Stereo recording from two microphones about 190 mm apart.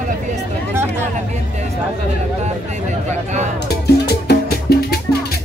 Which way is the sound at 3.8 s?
60° left (ahead or behind).